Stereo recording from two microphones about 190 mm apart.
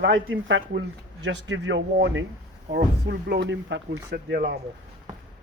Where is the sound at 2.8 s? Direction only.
60° right (ahead or behind).